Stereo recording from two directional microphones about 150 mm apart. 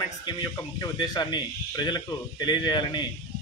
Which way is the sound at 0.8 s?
30° left (ahead or behind).